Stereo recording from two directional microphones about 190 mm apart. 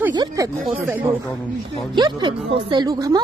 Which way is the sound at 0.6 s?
10° right (ahead or behind).